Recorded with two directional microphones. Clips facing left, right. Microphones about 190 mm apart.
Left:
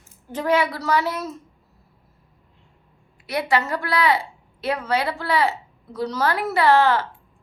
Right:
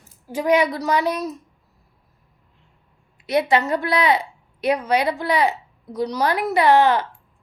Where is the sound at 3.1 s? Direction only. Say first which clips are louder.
Right 4 dB; 20° right (ahead or behind).